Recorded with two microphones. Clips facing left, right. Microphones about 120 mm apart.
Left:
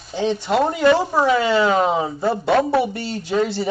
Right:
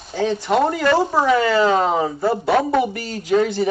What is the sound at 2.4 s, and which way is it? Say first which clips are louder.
Speech: left 1 dB; 5° right (ahead or behind).